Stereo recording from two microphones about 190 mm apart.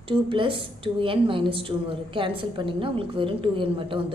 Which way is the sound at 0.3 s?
25° right (ahead or behind).